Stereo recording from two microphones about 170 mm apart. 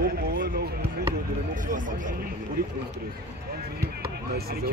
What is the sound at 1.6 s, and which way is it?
Speech, 50° right (ahead or behind).